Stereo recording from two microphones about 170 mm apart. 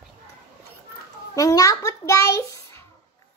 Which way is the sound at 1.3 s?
20° left (ahead or behind).